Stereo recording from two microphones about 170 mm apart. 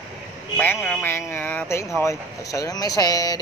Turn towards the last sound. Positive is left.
turn(degrees=20)  # may be behind; listen again after turning